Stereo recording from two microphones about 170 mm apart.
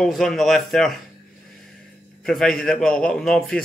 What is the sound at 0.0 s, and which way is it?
Speech, centre (ahead or behind).